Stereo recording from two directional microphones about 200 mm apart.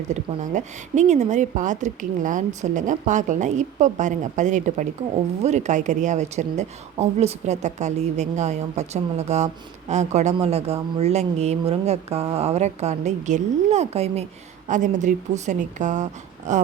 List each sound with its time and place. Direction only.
0.1 s a woman's voice: 35° right (ahead or behind)